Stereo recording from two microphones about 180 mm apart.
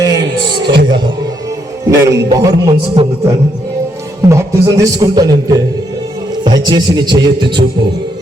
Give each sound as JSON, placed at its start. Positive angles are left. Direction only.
{"t": 0.0, "sound": "music", "side_deg": -20}
{"t": 0.6, "sound": "music", "side_deg": -70}
{"t": 1.9, "sound": "a man's voice", "side_deg": -20}
{"t": 4.3, "sound": "a man's voice", "side_deg": -20}
{"t": 6.7, "sound": "a man's voice", "side_deg": -25}